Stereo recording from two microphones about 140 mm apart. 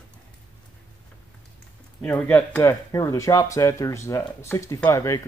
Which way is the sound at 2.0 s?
10° left (ahead or behind).